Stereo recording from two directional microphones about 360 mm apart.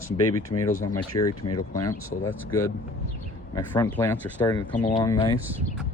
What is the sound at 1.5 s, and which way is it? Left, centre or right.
Speech, left.